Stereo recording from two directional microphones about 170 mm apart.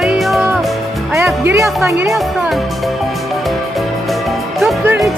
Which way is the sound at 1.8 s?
15° right (ahead or behind).